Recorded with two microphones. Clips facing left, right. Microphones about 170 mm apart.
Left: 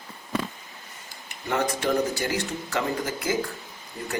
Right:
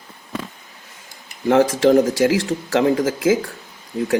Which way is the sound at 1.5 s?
90° right.